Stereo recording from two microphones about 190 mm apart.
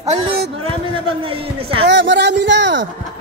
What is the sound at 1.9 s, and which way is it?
Speech, 70° right (ahead or behind).